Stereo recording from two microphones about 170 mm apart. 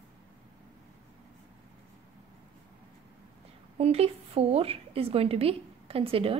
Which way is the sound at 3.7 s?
35° right (ahead or behind).